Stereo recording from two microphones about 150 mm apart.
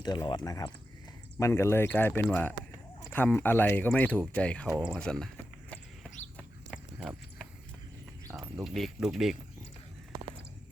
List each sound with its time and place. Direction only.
0.0 s speech: 30° left (ahead or behind); by 5.3 s 5° left (ahead or behind)
6.3 s a sound: centre (ahead or behind)
8.6 s speech: centre (ahead or behind)